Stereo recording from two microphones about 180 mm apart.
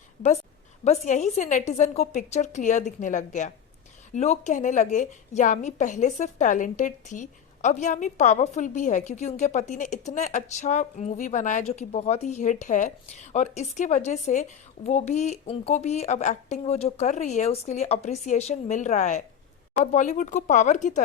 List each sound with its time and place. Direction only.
0.9 s a woman's voice: 40° left (ahead or behind)